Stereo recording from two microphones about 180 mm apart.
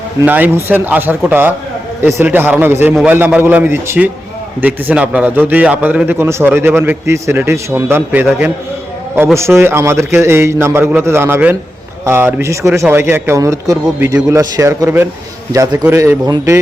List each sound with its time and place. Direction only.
0.2 s a man's voice: 10° right (ahead or behind)